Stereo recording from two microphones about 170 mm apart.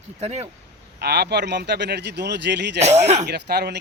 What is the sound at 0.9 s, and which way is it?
Speech, 75° right (ahead or behind).